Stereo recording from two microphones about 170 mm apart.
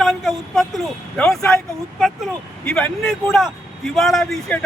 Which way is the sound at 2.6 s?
5° left (ahead or behind).